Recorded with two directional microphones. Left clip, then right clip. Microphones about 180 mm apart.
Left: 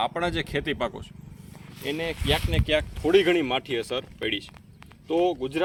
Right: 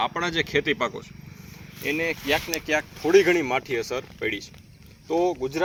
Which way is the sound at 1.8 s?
80° left.